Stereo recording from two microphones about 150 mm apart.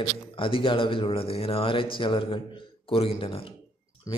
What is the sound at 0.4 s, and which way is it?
A man's voice, 35° left (ahead or behind).